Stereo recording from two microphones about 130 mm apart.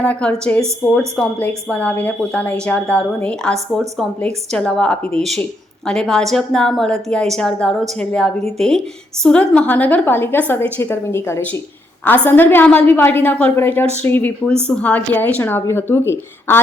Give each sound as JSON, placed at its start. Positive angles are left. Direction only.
{"t": 0.0, "sound": "a woman's voice", "side_deg": 10}